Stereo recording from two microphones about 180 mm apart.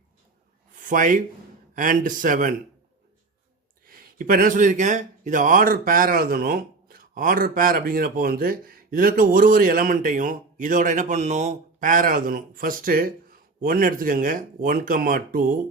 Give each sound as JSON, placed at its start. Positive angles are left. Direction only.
{"t": 0.8, "sound": "speech", "side_deg": -50}
{"t": 3.8, "sound": "speech", "side_deg": -55}